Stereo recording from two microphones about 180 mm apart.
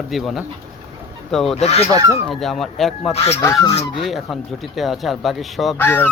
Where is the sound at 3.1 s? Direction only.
35° left (ahead or behind).